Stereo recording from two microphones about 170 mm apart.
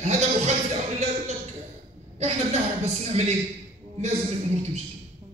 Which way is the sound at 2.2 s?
40° right (ahead or behind).